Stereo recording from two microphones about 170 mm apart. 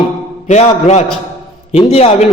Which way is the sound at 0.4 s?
40° left (ahead or behind).